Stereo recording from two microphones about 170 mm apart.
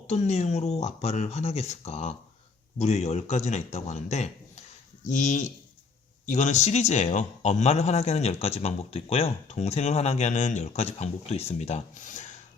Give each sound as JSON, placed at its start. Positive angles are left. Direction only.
{"t": 0.1, "sound": "speech", "side_deg": 40}